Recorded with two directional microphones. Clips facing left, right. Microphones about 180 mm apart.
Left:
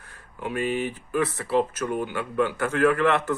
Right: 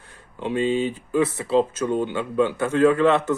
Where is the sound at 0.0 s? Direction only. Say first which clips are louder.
Right 4 dB; 25° right (ahead or behind).